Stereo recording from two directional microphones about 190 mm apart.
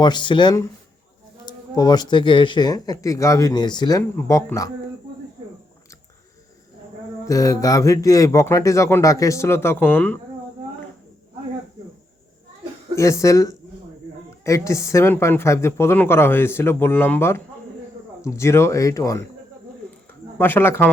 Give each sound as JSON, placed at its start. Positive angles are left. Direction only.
{"t": 0.0, "sound": "speech", "side_deg": 25}
{"t": 7.3, "sound": "speech", "side_deg": 15}
{"t": 13.0, "sound": "speech", "side_deg": 15}
{"t": 20.4, "sound": "speech", "side_deg": 10}